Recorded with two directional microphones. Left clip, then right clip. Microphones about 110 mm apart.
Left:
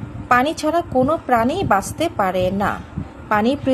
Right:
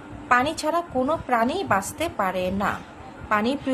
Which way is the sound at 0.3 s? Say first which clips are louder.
Left 4 dB; 45° left (ahead or behind).